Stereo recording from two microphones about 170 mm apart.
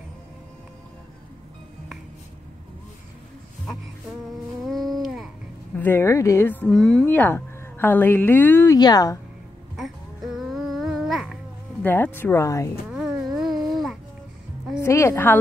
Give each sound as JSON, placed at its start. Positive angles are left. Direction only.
{"t": 5.0, "sound": "babbling", "side_deg": 0}
{"t": 5.8, "sound": "speech", "side_deg": 15}
{"t": 8.7, "sound": "speech", "side_deg": 25}
{"t": 9.8, "sound": "babbling", "side_deg": 0}
{"t": 11.8, "sound": "speech", "side_deg": 10}
{"t": 12.9, "sound": "a sound", "side_deg": -5}
{"t": 14.8, "sound": "a woman's voice", "side_deg": 15}